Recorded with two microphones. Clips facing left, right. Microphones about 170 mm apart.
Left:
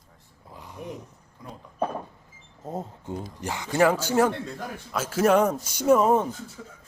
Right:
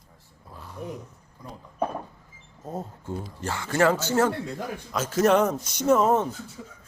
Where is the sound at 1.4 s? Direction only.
Centre (ahead or behind).